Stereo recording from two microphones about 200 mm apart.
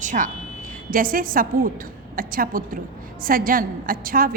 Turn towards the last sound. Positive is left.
turn(degrees=-45)  # may be behind; listen again after turning